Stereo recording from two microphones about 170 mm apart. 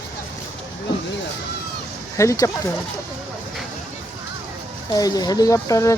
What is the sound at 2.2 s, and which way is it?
Speech, 20° left (ahead or behind).